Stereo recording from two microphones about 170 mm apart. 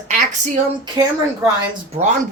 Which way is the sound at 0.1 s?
45° right (ahead or behind).